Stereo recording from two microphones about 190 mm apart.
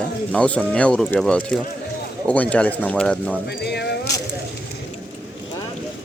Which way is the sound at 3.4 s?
60° left (ahead or behind).